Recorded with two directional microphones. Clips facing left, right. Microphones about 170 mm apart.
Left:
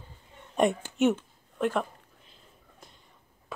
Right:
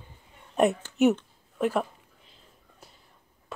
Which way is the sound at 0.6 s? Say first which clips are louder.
Right 2 dB; 5° right (ahead or behind).